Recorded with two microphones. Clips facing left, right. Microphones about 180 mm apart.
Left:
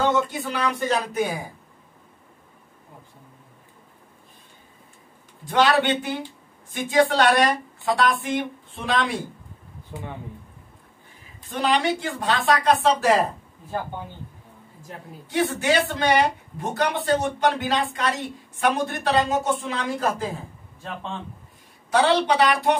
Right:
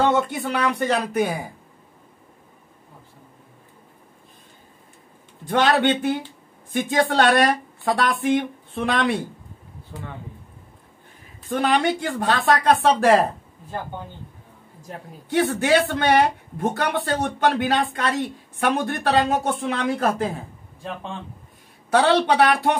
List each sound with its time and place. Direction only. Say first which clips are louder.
0.1 s speech: right 2 dB; 60° right (ahead or behind)
5.4 s speech: right 1 dB; 55° right (ahead or behind)
9.9 s speech: left 1 dB; 15° left (ahead or behind)
11.6 s speech: right 1 dB; 55° right (ahead or behind)
15.3 s speech: right 3 dB; 55° right (ahead or behind)
21.9 s speech: right 2 dB; 55° right (ahead or behind)